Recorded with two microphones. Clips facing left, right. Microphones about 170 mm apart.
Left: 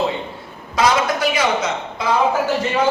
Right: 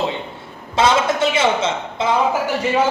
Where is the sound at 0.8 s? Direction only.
25° right (ahead or behind).